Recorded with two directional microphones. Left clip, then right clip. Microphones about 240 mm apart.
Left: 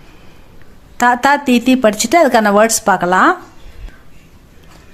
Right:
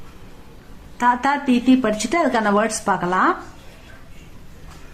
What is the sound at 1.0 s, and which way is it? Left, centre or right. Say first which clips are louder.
Speech: left 7 dB; left.